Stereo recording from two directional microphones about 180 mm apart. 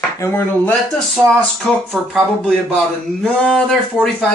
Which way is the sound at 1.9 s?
Centre (ahead or behind).